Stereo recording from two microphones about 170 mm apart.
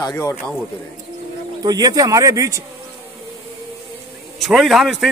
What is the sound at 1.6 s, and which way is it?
Speech, 20° right (ahead or behind).